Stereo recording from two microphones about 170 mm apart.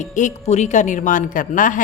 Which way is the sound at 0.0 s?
45° left (ahead or behind).